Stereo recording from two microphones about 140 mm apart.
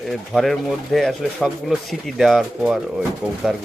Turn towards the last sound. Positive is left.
turn(degrees=0)  # may be behind; listen again after turning